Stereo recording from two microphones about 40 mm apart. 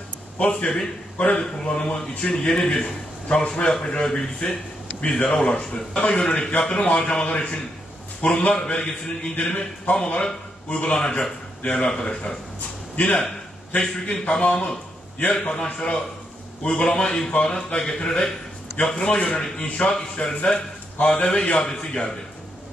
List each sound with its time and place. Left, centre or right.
0.4 s a man's voice: left